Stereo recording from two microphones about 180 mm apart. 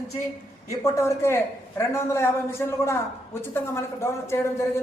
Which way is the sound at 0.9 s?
15° left (ahead or behind).